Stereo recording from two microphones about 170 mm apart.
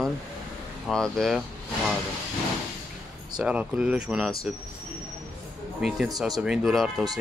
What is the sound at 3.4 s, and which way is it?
Speech, 5° right (ahead or behind).